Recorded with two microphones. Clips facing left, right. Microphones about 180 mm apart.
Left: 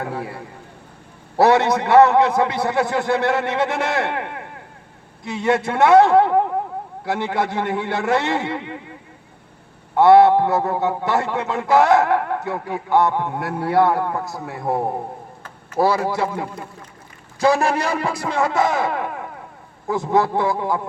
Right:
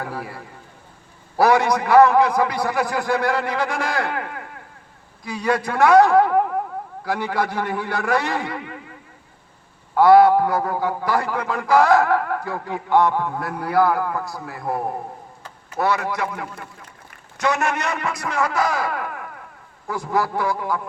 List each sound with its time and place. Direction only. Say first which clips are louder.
0.0 s a man's voice: left 3 dB; 25° left (ahead or behind)
9.9 s a man's voice: left 1 dB; 25° left (ahead or behind)